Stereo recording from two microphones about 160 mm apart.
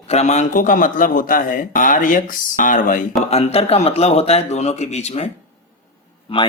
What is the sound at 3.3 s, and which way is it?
Speech, 40° left (ahead or behind).